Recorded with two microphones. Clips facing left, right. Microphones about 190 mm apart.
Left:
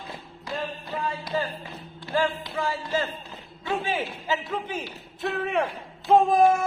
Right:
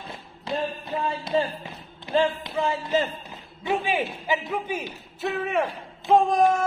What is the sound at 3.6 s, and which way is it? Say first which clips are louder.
A man's voice: right 3 dB; 15° right (ahead or behind).